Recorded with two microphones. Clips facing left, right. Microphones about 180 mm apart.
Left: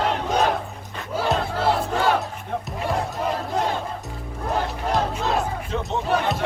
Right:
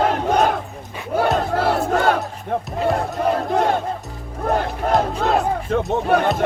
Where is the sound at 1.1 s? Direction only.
60° right (ahead or behind).